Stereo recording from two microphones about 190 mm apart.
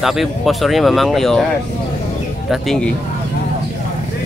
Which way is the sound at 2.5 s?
5° left (ahead or behind).